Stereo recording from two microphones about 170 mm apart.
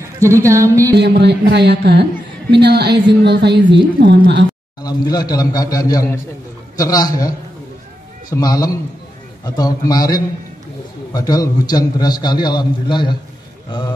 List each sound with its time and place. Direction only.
0.2 s music: 15° right (ahead or behind)
0.9 s music: 80° right
2.5 s a woman's voice: 75° right (ahead or behind)
4.8 s a man's voice: 25° left (ahead or behind)